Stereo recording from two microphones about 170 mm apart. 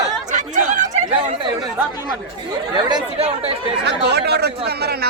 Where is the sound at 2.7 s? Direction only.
30° right (ahead or behind).